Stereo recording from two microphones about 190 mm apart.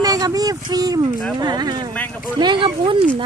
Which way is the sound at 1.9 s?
5° left (ahead or behind).